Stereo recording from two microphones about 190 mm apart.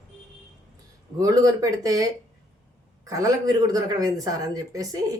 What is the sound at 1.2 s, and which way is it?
Speech, 20° right (ahead or behind).